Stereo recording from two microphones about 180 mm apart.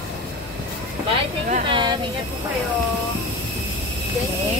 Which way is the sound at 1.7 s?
25° right (ahead or behind).